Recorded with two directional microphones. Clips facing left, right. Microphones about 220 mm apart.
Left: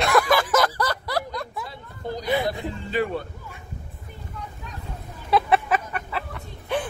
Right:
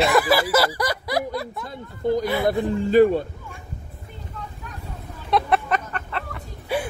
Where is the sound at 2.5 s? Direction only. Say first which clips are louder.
Right 8 dB; 50° right (ahead or behind).